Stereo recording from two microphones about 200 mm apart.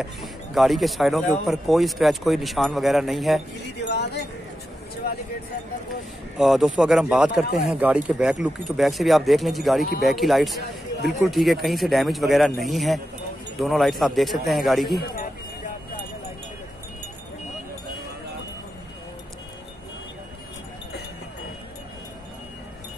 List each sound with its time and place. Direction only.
0.0 s speech: centre (ahead or behind)
3.8 s a sound: 55° left (ahead or behind)
6.3 s speech: centre (ahead or behind)